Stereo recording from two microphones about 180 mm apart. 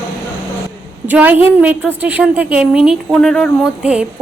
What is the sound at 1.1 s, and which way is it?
A woman's voice, 10° right (ahead or behind).